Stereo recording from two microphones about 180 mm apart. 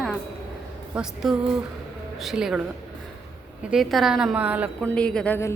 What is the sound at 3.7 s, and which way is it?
Speech, centre (ahead or behind).